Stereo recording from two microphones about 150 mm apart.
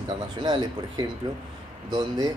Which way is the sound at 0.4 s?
30° right (ahead or behind).